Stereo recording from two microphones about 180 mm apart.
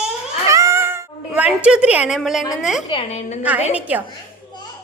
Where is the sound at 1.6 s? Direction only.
5° right (ahead or behind).